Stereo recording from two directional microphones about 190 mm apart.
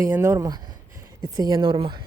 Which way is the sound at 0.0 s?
15° right (ahead or behind).